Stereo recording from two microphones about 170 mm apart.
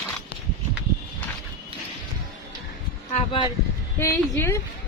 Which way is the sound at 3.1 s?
30° left (ahead or behind).